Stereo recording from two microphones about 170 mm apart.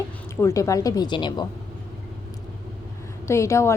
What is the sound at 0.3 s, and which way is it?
A woman's voice, 15° left (ahead or behind).